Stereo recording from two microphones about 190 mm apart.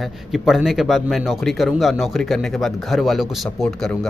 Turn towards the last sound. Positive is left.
turn(degrees=5)  # may be behind; listen again after turning